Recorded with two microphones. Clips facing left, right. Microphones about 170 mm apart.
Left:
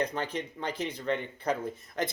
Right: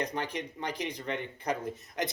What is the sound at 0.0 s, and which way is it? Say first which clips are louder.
A man's voice: left 2 dB; 15° right (ahead or behind).